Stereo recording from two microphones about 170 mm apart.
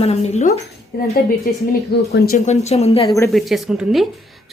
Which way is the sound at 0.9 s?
65° left (ahead or behind).